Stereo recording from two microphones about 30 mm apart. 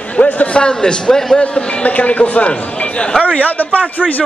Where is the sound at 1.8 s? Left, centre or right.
Left.